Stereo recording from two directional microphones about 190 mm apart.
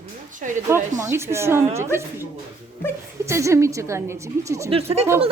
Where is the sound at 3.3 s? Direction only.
15° right (ahead or behind).